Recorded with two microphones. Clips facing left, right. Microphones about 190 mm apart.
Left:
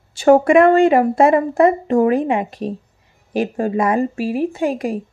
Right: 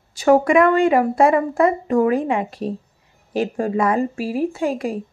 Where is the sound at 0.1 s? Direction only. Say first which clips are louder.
Left 3 dB; 30° left (ahead or behind).